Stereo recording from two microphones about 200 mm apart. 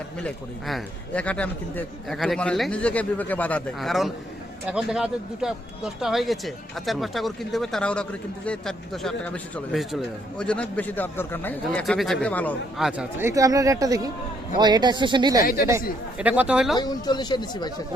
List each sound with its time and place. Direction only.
0.2 s a man's voice: 5° left (ahead or behind); by 15.4 s 20° right (ahead or behind)
16.1 s a man's voice: 5° right (ahead or behind)
16.7 s speech: 20° left (ahead or behind)